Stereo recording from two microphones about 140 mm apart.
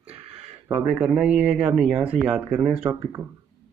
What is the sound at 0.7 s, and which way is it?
Speech, 5° right (ahead or behind).